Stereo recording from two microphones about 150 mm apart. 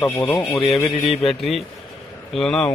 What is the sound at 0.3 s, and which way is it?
Speech, 10° left (ahead or behind).